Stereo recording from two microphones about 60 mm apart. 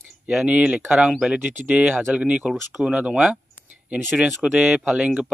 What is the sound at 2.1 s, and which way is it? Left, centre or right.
A man's voice, centre.